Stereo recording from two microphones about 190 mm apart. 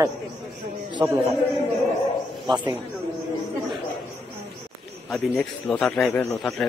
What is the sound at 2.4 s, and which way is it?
Speech, 25° right (ahead or behind).